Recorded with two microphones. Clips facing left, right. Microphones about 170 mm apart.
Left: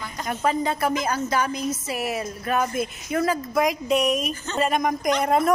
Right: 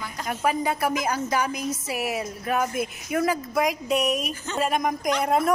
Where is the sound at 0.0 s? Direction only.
5° right (ahead or behind).